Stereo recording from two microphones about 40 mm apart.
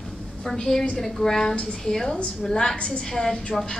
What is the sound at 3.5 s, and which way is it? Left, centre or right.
Speech, centre.